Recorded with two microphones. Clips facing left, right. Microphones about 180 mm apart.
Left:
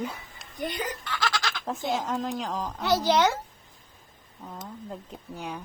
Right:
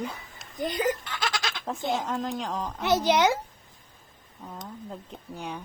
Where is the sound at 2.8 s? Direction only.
20° right (ahead or behind).